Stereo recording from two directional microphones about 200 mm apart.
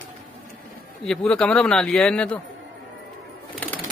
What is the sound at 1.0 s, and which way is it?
Speech, 5° left (ahead or behind).